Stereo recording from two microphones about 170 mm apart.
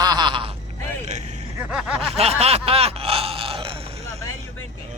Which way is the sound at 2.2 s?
35° right (ahead or behind).